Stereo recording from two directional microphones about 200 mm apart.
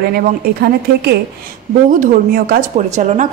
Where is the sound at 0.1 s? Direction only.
50° right (ahead or behind); by 3.3 s 35° right (ahead or behind).